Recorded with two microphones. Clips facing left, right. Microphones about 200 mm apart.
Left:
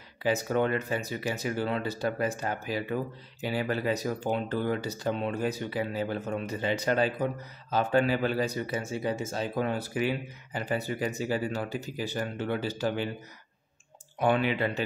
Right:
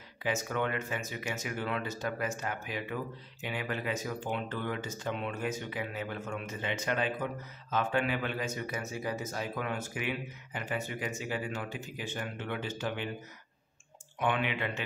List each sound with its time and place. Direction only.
0.2 s speech: 35° left (ahead or behind)
14.2 s speech: 35° left (ahead or behind)